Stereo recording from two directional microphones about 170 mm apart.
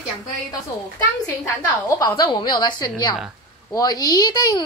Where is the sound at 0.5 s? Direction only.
20° left (ahead or behind).